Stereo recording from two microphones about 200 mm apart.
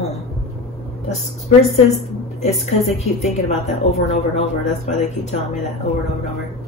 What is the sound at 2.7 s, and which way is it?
A woman's voice, 30° left (ahead or behind).